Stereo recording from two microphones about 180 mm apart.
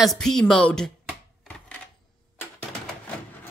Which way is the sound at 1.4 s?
5° left (ahead or behind).